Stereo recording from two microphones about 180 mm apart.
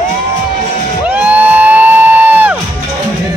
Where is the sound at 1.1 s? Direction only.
5° right (ahead or behind).